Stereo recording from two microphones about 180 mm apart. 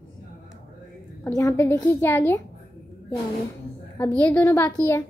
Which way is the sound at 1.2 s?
15° left (ahead or behind).